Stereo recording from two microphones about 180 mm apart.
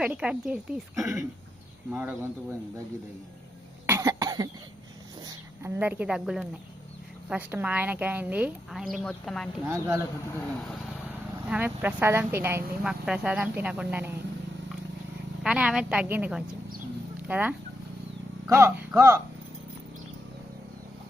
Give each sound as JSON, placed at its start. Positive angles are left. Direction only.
{"t": 0.0, "sound": "speech", "side_deg": -5}
{"t": 3.8, "sound": "cough", "side_deg": -15}
{"t": 5.2, "sound": "speech", "side_deg": -15}
{"t": 9.6, "sound": "speech", "side_deg": -15}
{"t": 11.4, "sound": "speech", "side_deg": -10}
{"t": 15.4, "sound": "speech", "side_deg": -5}